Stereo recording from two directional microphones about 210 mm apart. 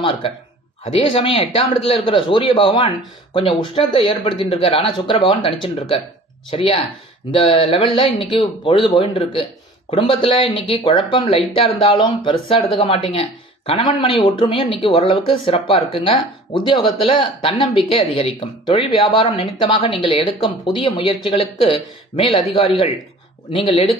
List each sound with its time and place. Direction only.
0.9 s speech: 25° left (ahead or behind)